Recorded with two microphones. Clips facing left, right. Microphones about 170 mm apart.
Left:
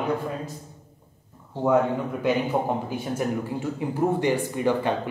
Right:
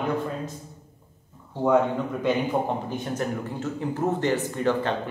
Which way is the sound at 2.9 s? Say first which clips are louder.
Left 1 dB; 10° left (ahead or behind).